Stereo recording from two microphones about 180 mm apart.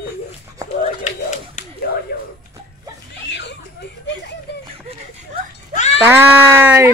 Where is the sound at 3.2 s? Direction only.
75° left (ahead or behind).